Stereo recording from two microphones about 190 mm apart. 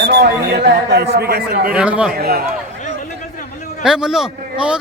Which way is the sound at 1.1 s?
60° right (ahead or behind).